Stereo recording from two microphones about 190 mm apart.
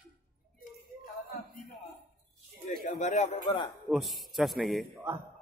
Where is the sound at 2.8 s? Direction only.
40° left (ahead or behind).